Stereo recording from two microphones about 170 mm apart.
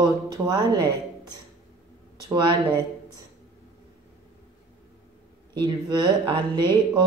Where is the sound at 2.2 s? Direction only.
25° right (ahead or behind).